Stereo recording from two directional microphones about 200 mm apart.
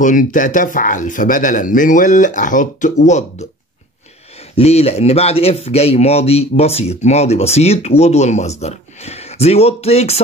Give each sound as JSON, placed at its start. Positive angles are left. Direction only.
{"t": 0.0, "sound": "speech", "side_deg": 40}
{"t": 4.6, "sound": "speech", "side_deg": 30}